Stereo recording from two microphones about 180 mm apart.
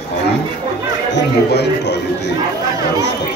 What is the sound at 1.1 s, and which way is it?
Speech, 70° left (ahead or behind).